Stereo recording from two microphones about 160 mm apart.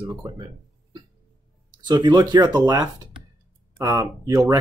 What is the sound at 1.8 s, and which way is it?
Speech, 25° right (ahead or behind).